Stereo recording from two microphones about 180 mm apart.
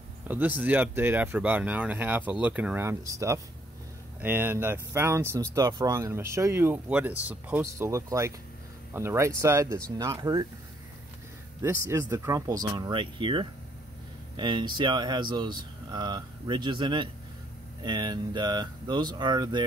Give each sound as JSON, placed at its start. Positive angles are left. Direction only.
{"t": 0.3, "sound": "speech", "side_deg": -10}
{"t": 11.6, "sound": "speech", "side_deg": -15}